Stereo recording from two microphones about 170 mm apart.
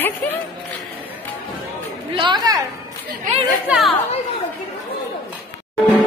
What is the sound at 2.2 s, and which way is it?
Speech, 25° right (ahead or behind).